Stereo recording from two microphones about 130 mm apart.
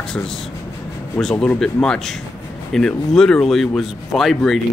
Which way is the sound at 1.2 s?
5° left (ahead or behind).